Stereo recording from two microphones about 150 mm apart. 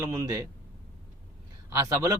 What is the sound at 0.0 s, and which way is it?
Speech, 20° right (ahead or behind).